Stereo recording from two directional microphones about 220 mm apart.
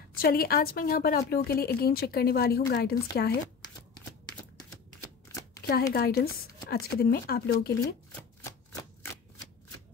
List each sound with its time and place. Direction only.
0.2 s a woman's voice: 40° left (ahead or behind)
3.6 s shuffling cards: 20° left (ahead or behind)
5.9 s a woman's voice: 45° left (ahead or behind)
8.5 s typewriter: 15° left (ahead or behind)